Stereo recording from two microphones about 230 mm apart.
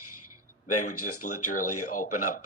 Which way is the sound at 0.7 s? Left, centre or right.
Left.